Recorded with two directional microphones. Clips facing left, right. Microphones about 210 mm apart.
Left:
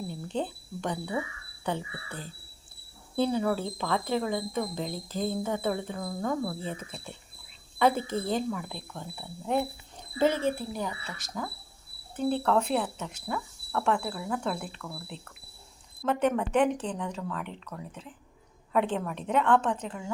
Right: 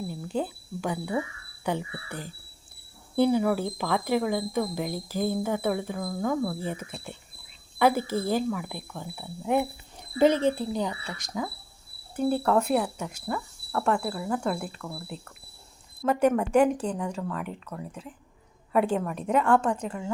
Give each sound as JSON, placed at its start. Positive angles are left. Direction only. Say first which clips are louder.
{"t": 0.1, "sound": "speech", "louder": "right 2 dB", "side_deg": -5}
{"t": 16.0, "sound": "a woman's voice", "louder": "right 4 dB", "side_deg": -5}